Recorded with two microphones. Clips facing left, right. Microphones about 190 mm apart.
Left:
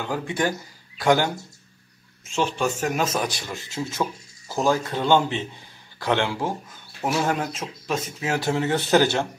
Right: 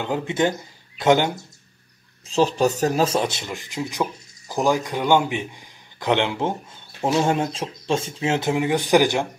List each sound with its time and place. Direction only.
0.0 s speech: 20° right (ahead or behind)
2.2 s speech: 35° right (ahead or behind); by 9.3 s 15° right (ahead or behind)